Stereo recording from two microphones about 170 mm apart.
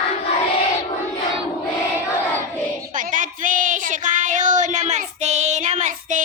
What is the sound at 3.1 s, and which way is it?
Child singing, 50° right (ahead or behind).